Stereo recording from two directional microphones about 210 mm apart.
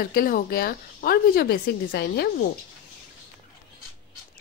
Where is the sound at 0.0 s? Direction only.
45° left (ahead or behind).